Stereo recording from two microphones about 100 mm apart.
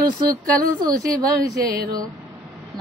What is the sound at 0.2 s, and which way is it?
A woman's voice, 40° right (ahead or behind).